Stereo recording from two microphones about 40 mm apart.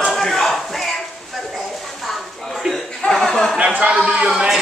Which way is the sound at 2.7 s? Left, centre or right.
Centre.